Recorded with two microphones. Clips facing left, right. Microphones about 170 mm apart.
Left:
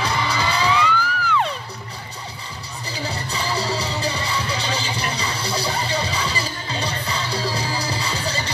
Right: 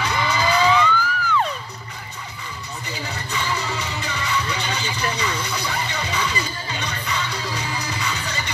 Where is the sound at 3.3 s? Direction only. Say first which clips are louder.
Left 1 dB; 35° left (ahead or behind).